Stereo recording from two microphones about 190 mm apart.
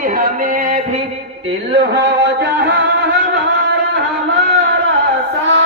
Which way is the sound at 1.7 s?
60° right (ahead or behind).